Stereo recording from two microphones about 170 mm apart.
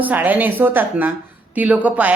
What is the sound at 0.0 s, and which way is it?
A woman's voice, 10° right (ahead or behind).